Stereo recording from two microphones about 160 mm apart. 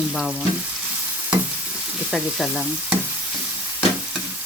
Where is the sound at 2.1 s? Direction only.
Centre (ahead or behind).